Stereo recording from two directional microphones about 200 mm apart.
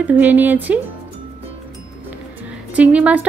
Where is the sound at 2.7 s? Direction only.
5° right (ahead or behind).